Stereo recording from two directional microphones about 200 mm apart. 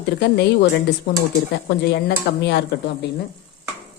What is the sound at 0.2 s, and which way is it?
Speech, 55° left (ahead or behind).